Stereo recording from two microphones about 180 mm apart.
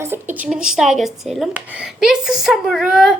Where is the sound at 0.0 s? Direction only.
10° right (ahead or behind).